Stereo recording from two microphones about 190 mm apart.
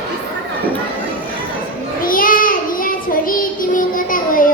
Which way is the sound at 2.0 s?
45° left (ahead or behind).